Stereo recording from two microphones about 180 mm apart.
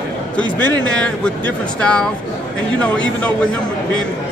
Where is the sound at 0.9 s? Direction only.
5° left (ahead or behind).